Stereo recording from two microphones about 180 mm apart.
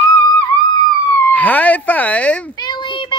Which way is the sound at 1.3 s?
10° left (ahead or behind).